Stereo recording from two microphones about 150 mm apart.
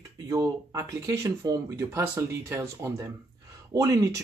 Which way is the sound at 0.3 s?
25° right (ahead or behind).